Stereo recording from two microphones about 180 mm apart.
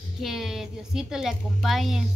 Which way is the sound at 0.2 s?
Centre (ahead or behind).